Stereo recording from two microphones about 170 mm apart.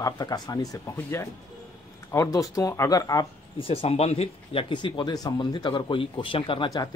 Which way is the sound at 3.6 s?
35° left (ahead or behind).